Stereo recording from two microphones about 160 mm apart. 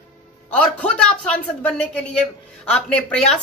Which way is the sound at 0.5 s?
5° left (ahead or behind).